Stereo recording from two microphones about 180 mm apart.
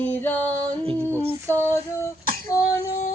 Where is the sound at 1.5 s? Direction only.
15° left (ahead or behind).